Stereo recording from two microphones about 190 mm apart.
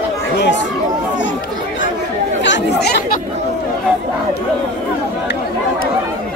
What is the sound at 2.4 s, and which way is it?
Chatter, 65° left (ahead or behind).